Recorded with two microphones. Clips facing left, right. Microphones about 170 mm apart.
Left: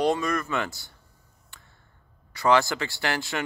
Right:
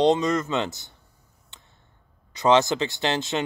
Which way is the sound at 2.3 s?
20° right (ahead or behind).